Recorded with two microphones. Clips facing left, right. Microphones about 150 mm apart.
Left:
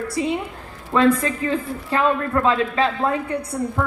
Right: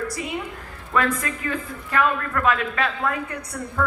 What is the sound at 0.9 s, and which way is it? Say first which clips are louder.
Speech: left 6 dB; 25° left (ahead or behind).